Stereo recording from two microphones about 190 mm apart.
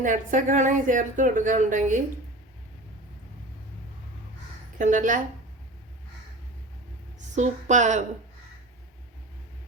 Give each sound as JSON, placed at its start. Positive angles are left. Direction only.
{"t": 0.0, "sound": "a woman's voice", "side_deg": -45}
{"t": 4.8, "sound": "a woman's voice", "side_deg": -40}
{"t": 7.3, "sound": "a woman's voice", "side_deg": -40}